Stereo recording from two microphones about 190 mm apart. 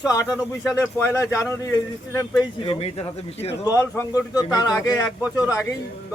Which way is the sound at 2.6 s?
30° left (ahead or behind).